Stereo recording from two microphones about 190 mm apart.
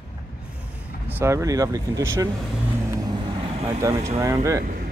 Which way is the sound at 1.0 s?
10° right (ahead or behind).